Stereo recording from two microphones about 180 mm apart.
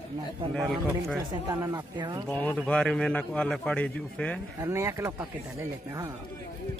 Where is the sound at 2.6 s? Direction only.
5° left (ahead or behind).